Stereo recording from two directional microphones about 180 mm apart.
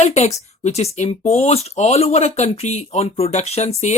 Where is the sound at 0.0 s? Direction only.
40° left (ahead or behind).